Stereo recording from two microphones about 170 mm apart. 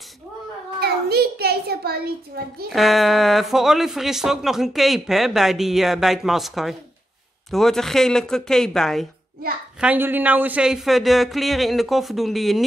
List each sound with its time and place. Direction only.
0.7 s child singing: 70° right (ahead or behind)
2.3 s a woman's voice: 65° right (ahead or behind)
2.7 s speech: centre (ahead or behind)
9.8 s speech: 10° right (ahead or behind)